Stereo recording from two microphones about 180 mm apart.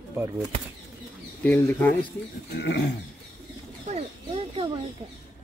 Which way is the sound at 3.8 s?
35° right (ahead or behind).